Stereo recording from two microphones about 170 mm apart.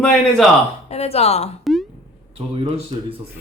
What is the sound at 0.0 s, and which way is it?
Speech, centre (ahead or behind).